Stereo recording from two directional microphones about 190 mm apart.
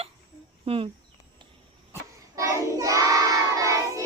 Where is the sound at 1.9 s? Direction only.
15° right (ahead or behind).